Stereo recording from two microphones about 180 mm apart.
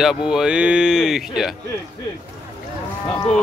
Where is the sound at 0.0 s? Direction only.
5° right (ahead or behind).